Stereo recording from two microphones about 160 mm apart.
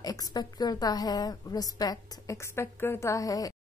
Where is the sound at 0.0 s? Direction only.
25° left (ahead or behind).